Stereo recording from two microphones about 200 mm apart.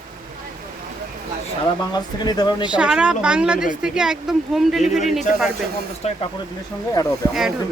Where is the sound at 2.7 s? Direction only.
5° right (ahead or behind).